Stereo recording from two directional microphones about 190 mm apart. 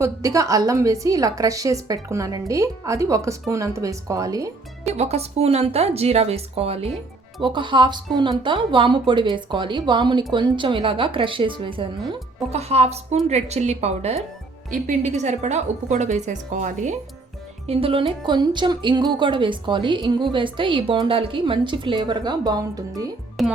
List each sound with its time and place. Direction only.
0.0 s a woman's voice: 15° right (ahead or behind)
4.9 s a woman's voice: 35° right (ahead or behind)
17.7 s speech: 30° right (ahead or behind)
23.4 s a child's voice: centre (ahead or behind)